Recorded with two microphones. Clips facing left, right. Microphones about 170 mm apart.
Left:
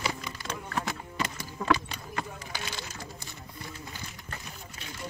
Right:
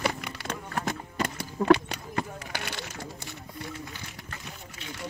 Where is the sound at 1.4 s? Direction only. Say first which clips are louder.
Right 7 dB; 70° right (ahead or behind).